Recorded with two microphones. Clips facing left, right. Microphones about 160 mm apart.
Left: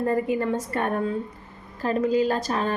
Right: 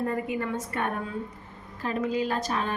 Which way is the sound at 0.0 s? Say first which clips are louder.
Left 5 dB; 35° left (ahead or behind).